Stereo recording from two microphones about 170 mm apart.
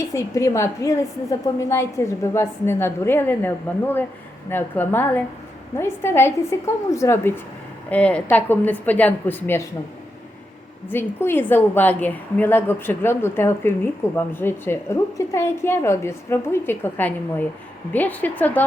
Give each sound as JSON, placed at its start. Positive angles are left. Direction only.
{"t": 0.0, "sound": "a woman's voice", "side_deg": 15}
{"t": 10.8, "sound": "a woman's voice", "side_deg": 15}